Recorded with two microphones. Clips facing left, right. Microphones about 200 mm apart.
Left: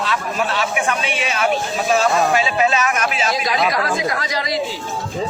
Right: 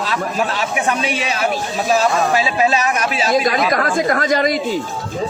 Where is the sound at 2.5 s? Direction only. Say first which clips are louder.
Right 1 dB; 35° right (ahead or behind).